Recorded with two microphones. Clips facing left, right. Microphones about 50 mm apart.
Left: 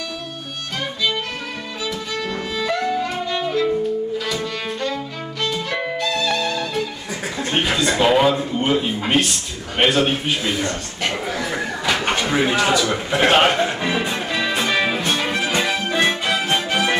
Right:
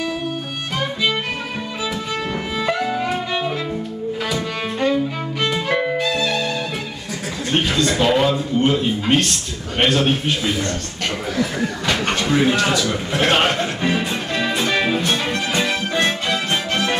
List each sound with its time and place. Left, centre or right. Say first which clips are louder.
2.6 s music: even; centre
5.4 s violin: right 3 dB; right
5.8 s music: right 2 dB; centre
7.5 s speech: right 1 dB; centre
11.3 s a sound: right 2 dB; centre
12.4 s speech: even; centre
14.6 s music: right 1 dB; centre